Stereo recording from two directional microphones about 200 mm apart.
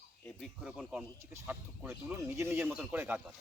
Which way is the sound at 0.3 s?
Centre (ahead or behind).